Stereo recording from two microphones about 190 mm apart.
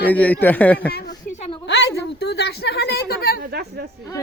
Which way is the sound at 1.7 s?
65° left (ahead or behind).